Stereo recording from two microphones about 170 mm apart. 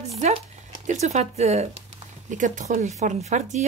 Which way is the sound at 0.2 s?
45° right (ahead or behind).